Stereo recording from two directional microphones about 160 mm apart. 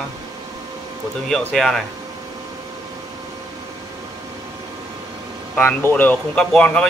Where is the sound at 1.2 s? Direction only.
5° left (ahead or behind).